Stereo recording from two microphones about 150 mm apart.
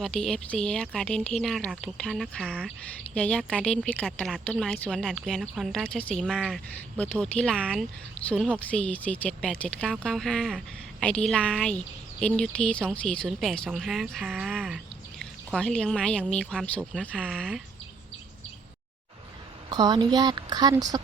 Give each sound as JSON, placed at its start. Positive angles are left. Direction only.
{"t": 0.0, "sound": "a woman's voice", "side_deg": 5}
{"t": 19.7, "sound": "a woman's voice", "side_deg": -25}